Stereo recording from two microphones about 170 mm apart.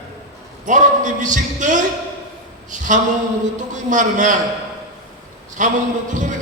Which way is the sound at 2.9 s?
45° right (ahead or behind).